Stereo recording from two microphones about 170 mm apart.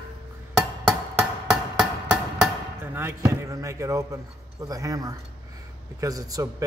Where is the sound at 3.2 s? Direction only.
20° right (ahead or behind).